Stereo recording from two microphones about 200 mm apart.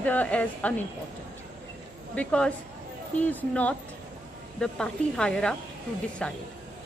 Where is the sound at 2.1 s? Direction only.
5° left (ahead or behind).